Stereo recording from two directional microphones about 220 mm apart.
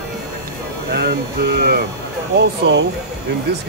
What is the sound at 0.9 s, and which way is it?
Speech, 45° right (ahead or behind).